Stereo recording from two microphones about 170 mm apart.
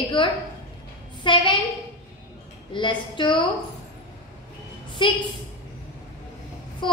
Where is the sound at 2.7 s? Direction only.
25° left (ahead or behind).